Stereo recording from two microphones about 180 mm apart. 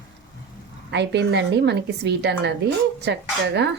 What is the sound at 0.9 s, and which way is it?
Speech, 75° right (ahead or behind).